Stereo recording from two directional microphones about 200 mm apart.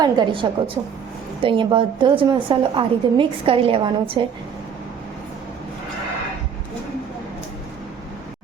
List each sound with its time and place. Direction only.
0.0 s a woman's voice: 20° right (ahead or behind)